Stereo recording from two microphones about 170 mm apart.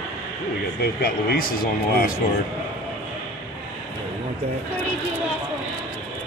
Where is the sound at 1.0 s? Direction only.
60° left (ahead or behind).